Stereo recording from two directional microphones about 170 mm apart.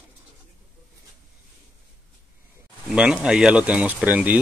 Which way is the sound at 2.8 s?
5° right (ahead or behind).